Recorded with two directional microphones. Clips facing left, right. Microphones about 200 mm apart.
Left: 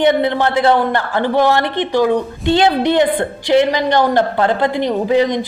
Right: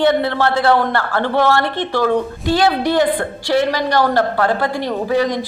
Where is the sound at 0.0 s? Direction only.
20° left (ahead or behind).